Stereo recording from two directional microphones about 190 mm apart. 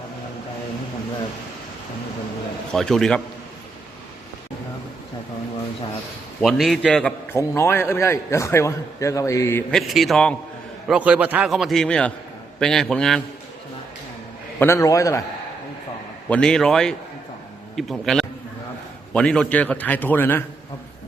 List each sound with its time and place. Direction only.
2.7 s a man's voice: 5° left (ahead or behind)
6.4 s a man's voice: centre (ahead or behind)
9.7 s a man's voice: centre (ahead or behind)
14.6 s a man's voice: 15° left (ahead or behind)
16.3 s a man's voice: 5° left (ahead or behind)